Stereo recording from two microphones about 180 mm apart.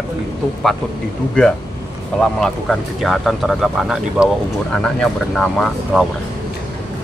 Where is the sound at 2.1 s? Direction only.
5° left (ahead or behind).